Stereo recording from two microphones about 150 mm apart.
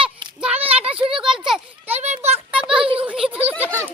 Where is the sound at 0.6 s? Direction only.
40° right (ahead or behind).